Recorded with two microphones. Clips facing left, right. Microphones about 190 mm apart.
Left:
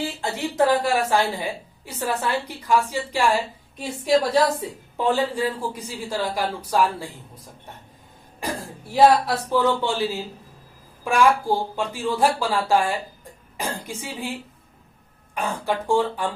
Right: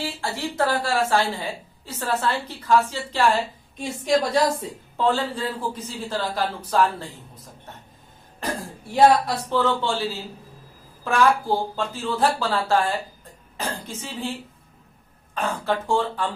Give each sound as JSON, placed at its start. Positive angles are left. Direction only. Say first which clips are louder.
{"t": 0.0, "sound": "a woman's voice", "louder": "left 2 dB", "side_deg": 20}
{"t": 4.9, "sound": "a woman's voice", "louder": "left 1 dB", "side_deg": 15}
{"t": 8.9, "sound": "speech", "louder": "left 1 dB", "side_deg": 5}
{"t": 9.6, "sound": "a woman's voice", "louder": "left 1 dB", "side_deg": 15}
{"t": 11.0, "sound": "a woman's voice", "louder": "left 1 dB", "side_deg": 10}
{"t": 15.4, "sound": "a woman's voice", "louder": "even", "side_deg": 15}